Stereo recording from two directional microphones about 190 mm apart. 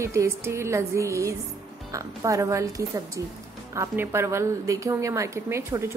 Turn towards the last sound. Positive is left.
turn(degrees=-15)  # may be behind; listen again after turning